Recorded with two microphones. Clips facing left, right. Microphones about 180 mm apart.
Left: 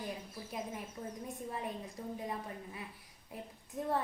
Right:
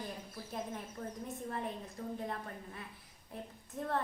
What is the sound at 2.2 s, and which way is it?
A woman's voice, 10° left (ahead or behind).